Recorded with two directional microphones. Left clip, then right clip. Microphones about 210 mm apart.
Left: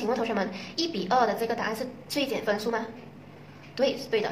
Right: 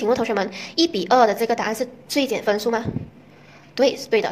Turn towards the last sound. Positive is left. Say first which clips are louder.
# right 7 dB
turn(degrees=-35)  # may be behind; listen again after turning